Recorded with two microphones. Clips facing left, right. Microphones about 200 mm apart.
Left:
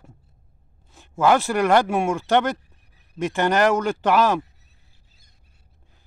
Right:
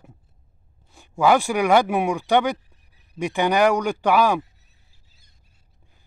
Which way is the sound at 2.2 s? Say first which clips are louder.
Even; 15° right (ahead or behind).